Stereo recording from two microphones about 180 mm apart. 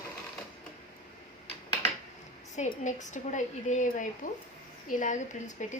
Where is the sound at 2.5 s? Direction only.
40° left (ahead or behind).